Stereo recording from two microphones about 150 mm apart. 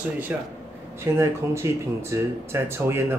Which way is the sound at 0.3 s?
10° right (ahead or behind).